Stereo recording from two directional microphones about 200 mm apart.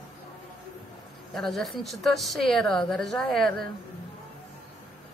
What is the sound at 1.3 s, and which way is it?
A woman's voice, centre (ahead or behind).